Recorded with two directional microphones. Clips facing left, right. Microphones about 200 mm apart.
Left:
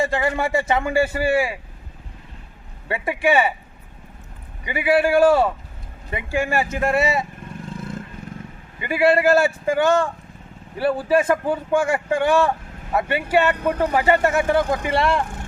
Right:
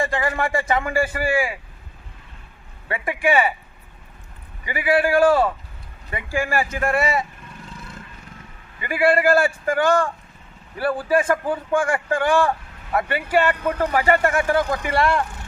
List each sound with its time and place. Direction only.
0.1 s speech: 25° left (ahead or behind)
2.9 s speech: 25° left (ahead or behind)
4.6 s speech: 25° left (ahead or behind)
7.6 s vehicle: 50° left (ahead or behind)
8.8 s speech: 25° left (ahead or behind)